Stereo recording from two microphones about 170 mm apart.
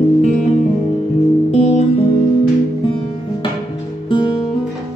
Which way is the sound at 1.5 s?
40° left (ahead or behind).